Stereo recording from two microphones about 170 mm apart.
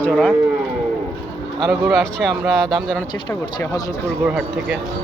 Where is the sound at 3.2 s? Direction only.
25° left (ahead or behind).